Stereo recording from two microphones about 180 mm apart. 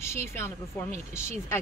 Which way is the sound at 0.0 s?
15° left (ahead or behind).